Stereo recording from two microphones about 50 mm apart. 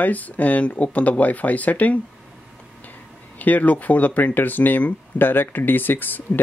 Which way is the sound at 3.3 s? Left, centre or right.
Left.